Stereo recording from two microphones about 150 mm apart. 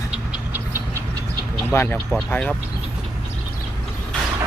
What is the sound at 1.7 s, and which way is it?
Speech, 15° left (ahead or behind).